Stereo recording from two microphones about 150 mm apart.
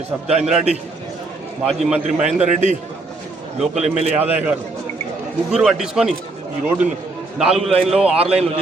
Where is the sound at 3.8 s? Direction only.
50° right (ahead or behind).